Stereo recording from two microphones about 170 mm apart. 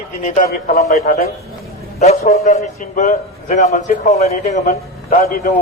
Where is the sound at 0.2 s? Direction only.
45° left (ahead or behind).